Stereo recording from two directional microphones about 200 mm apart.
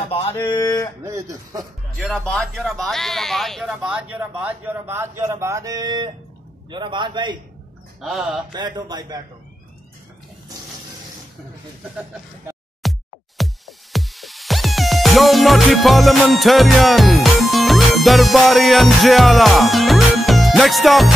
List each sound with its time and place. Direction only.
0.5 s a sound: 20° left (ahead or behind)
1.0 s speech: 15° right (ahead or behind)
2.0 s a man's voice: 5° left (ahead or behind); by 7.3 s 25° right (ahead or behind)
8.0 s speech: centre (ahead or behind)
8.5 s a man's voice: 20° right (ahead or behind)
12.8 s music: centre (ahead or behind)